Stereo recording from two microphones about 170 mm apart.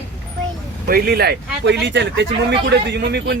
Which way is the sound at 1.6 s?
90° right.